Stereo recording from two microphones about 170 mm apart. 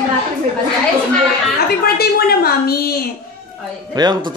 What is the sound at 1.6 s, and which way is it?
A woman's voice, 65° left (ahead or behind).